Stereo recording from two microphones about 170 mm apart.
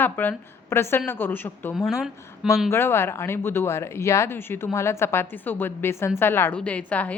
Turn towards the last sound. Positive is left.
turn(degrees=10)  # may be behind; listen again after turning